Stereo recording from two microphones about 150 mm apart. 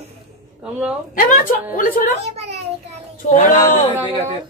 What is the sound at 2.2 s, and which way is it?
Speech, 45° right (ahead or behind).